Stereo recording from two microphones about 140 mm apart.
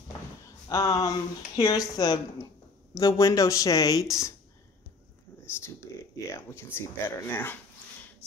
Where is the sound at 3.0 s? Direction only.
25° left (ahead or behind).